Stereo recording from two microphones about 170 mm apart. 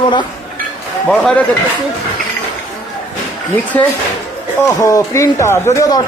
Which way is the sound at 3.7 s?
10° left (ahead or behind).